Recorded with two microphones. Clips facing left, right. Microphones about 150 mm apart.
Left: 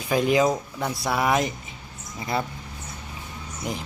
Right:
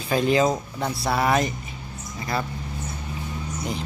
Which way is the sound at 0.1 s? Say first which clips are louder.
Even; 15° left (ahead or behind).